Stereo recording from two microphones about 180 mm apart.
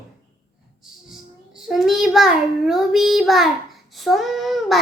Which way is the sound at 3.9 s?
Centre (ahead or behind).